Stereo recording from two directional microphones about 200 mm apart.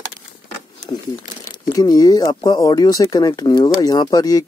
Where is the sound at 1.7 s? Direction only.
20° left (ahead or behind).